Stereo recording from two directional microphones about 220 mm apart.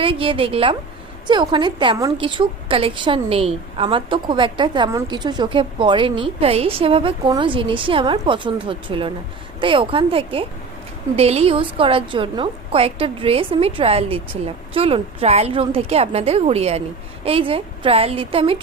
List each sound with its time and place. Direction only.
0.0 s a woman's voice: 25° right (ahead or behind)